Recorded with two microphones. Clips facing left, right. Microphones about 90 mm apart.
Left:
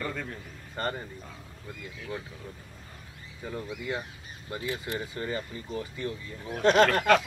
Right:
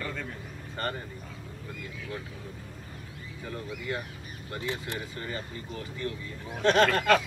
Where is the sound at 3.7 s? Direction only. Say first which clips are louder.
Left 1 dB; 20° left (ahead or behind).